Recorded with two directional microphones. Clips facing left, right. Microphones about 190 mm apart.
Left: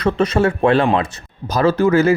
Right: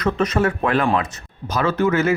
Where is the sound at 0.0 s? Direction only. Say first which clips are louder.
Left 3 dB; 30° left (ahead or behind).